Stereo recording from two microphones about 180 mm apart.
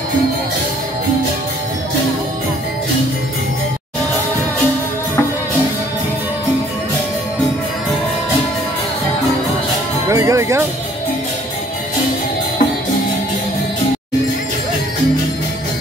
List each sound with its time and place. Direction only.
10.0 s music: 15° right (ahead or behind)